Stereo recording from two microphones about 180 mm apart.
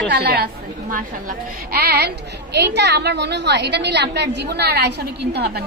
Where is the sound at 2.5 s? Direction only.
70° right (ahead or behind).